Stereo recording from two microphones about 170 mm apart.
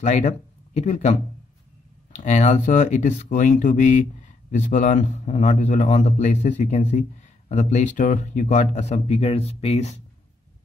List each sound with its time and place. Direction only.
0.0 s speech: 45° left (ahead or behind)
2.1 s a man's voice: 45° left (ahead or behind)